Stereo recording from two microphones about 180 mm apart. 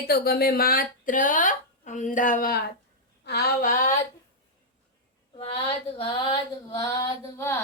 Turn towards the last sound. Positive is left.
turn(degrees=15)  # may be behind; listen again after turning